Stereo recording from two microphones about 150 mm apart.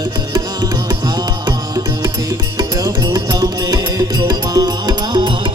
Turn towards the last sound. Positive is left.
turn(degrees=-30)  # may be behind; listen again after turning